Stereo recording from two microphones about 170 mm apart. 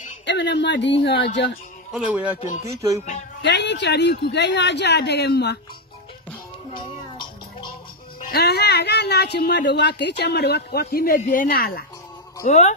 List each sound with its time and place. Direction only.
0.2 s a woman's voice: 90° left
1.9 s speech: 5° right (ahead or behind)
2.6 s speech: 20° right (ahead or behind)
3.4 s speech: 90° left
8.3 s a woman's voice: 65° left (ahead or behind)
11.1 s speech: 45° left (ahead or behind)
11.4 s speech: 60° left (ahead or behind)
12.4 s speech: 45° left (ahead or behind)